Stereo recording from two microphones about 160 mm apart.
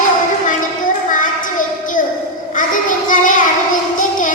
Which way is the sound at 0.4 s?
55° left (ahead or behind).